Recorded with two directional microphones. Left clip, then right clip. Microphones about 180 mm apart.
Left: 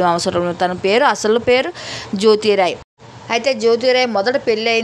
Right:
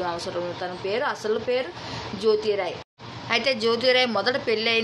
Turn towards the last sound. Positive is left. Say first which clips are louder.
# left 7 dB
turn(degrees=40)  # may be behind; listen again after turning